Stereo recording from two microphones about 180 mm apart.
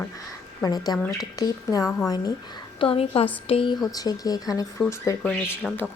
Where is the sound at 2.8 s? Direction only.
30° left (ahead or behind); by 5.5 s 5° left (ahead or behind).